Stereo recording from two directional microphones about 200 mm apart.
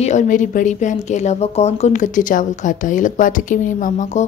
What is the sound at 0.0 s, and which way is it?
A woman's voice, 35° left (ahead or behind).